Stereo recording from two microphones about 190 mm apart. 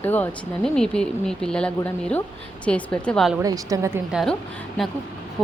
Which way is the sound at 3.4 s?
15° right (ahead or behind).